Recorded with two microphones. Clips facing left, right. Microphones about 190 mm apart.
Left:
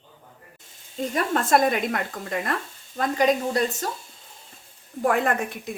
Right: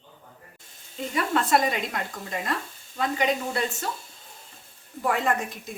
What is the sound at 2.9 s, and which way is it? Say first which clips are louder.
Speech: left 4 dB; 40° left (ahead or behind).